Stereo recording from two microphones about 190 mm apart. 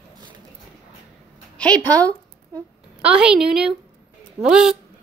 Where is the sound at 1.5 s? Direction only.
5° left (ahead or behind).